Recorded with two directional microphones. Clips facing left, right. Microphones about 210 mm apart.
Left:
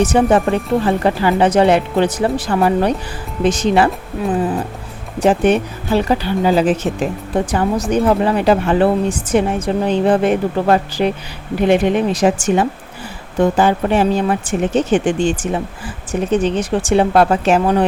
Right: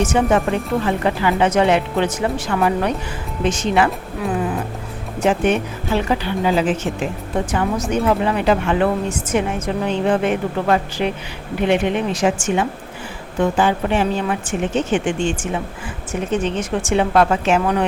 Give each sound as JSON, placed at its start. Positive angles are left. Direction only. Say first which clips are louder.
{"t": 0.0, "sound": "a woman's voice", "louder": "left 4 dB", "side_deg": 35}
{"t": 5.2, "sound": "a woman's voice", "louder": "left 4 dB", "side_deg": 35}